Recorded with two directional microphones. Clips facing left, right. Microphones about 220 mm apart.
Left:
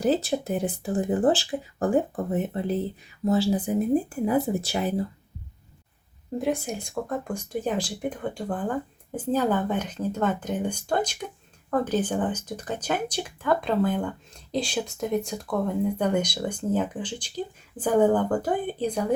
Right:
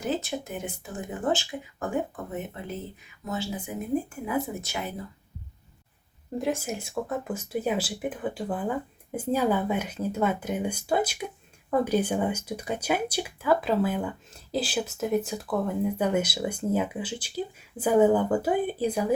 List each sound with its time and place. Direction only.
0.0 s speech: 35° left (ahead or behind)
6.4 s speech: centre (ahead or behind)